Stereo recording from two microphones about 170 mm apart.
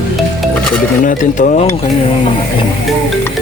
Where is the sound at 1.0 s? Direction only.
50° left (ahead or behind).